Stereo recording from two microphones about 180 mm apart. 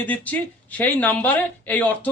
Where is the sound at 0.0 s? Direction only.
10° left (ahead or behind).